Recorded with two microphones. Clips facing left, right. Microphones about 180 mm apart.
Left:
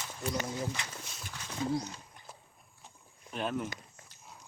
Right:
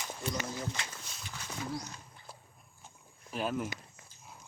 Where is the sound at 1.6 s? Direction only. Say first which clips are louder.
Left 8 dB; 25° left (ahead or behind).